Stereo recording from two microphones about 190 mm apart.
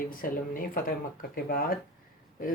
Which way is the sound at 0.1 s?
50° left (ahead or behind).